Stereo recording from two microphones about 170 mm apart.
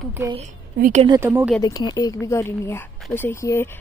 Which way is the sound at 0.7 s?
55° right (ahead or behind).